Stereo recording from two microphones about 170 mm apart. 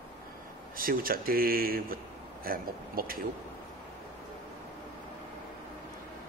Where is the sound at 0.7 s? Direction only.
60° right (ahead or behind).